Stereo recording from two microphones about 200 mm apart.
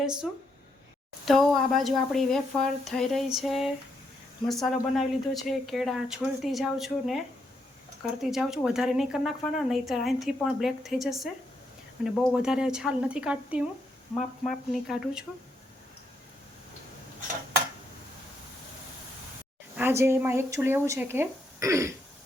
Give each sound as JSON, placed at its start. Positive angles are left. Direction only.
{"t": 0.0, "sound": "a woman's voice", "side_deg": -5}
{"t": 19.7, "sound": "speech", "side_deg": -10}